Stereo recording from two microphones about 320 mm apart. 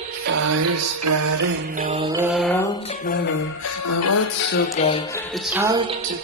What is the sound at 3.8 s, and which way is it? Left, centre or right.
Music, left.